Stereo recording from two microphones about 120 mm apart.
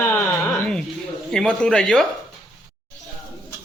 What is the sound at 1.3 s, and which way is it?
Speech, 5° left (ahead or behind).